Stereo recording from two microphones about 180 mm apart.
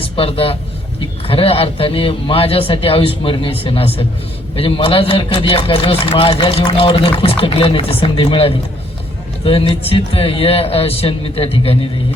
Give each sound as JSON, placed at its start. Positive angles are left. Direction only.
{"t": 0.0, "sound": "a man's voice", "side_deg": 30}